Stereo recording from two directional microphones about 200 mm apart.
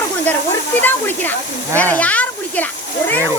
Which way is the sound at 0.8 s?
10° left (ahead or behind).